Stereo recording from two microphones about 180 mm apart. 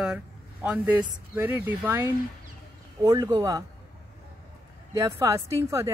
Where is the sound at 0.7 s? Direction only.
10° right (ahead or behind).